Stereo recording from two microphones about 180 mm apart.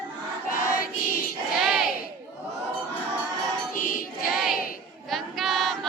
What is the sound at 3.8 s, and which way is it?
Choir, 50° left (ahead or behind).